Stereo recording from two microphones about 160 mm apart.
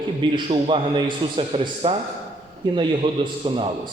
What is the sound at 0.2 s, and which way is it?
A man's voice, 30° right (ahead or behind).